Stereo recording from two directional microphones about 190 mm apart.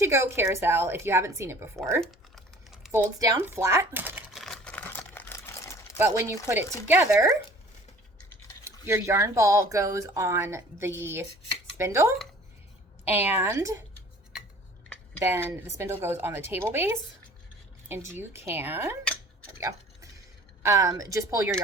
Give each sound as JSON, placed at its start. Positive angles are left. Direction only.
{"t": 0.0, "sound": "speech", "side_deg": -15}
{"t": 2.0, "sound": "typing", "side_deg": 0}
{"t": 2.9, "sound": "speech", "side_deg": -15}
{"t": 4.4, "sound": "camera", "side_deg": 5}
{"t": 6.0, "sound": "speech", "side_deg": -15}
{"t": 8.9, "sound": "speech", "side_deg": -15}
{"t": 15.2, "sound": "speech", "side_deg": -10}
{"t": 19.5, "sound": "tick-tock", "side_deg": -15}
{"t": 20.6, "sound": "speech", "side_deg": -15}